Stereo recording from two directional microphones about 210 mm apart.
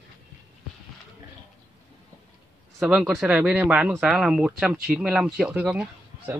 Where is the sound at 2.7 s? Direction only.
5° right (ahead or behind).